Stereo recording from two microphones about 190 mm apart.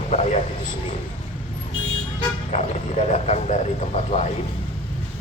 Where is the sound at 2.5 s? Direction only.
35° left (ahead or behind).